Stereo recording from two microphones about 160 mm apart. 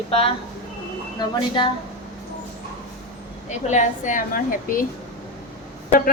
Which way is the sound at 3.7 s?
50° left (ahead or behind).